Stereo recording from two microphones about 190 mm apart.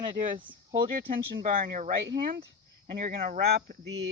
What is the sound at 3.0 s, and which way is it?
Speech, 45° right (ahead or behind).